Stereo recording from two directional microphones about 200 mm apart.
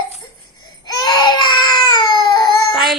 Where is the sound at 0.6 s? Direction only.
20° left (ahead or behind).